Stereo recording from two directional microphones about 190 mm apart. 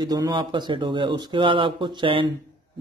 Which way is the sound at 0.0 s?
20° right (ahead or behind).